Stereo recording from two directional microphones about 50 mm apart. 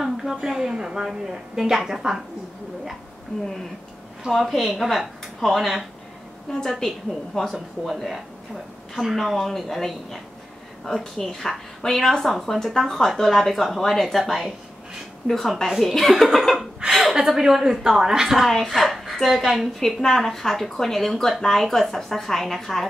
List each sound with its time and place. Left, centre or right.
0.0 s a woman's voice: centre
4.2 s a woman's voice: centre
7.5 s a woman's voice: centre
18.4 s speech: centre